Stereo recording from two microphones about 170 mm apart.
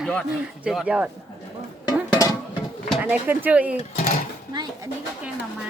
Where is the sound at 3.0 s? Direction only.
10° right (ahead or behind).